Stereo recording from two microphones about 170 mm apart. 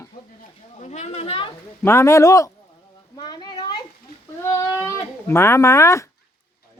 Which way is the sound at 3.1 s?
25° left (ahead or behind).